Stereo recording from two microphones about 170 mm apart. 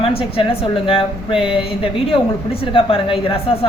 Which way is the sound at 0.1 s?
35° left (ahead or behind).